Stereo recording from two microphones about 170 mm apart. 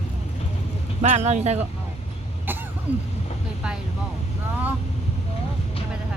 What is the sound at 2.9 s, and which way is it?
Speech, 10° right (ahead or behind).